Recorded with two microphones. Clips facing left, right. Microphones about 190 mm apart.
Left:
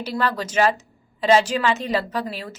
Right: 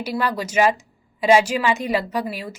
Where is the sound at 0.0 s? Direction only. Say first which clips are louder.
Right 1 dB; 10° right (ahead or behind).